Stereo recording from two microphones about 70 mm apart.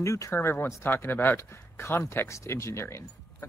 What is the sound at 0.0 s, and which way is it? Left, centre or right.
Speech, left.